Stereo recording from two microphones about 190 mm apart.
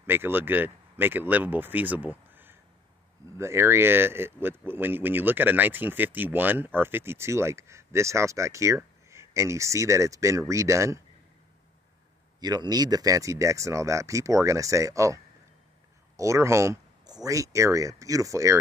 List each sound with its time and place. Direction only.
0.0 s speech: 10° right (ahead or behind)
12.4 s speech: 20° right (ahead or behind)
16.2 s speech: 15° right (ahead or behind)